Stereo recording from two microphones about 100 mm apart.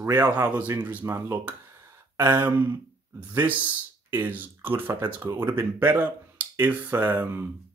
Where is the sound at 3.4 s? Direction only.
15° right (ahead or behind).